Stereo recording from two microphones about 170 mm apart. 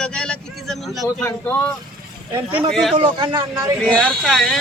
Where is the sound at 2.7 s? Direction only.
Centre (ahead or behind).